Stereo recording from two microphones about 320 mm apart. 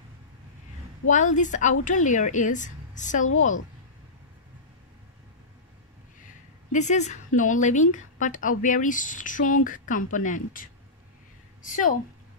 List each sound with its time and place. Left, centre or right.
1.0 s a woman's voice: left
6.7 s a woman's voice: left